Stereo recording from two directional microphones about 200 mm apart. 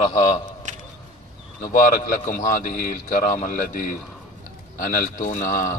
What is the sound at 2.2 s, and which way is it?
A man's voice, 40° left (ahead or behind).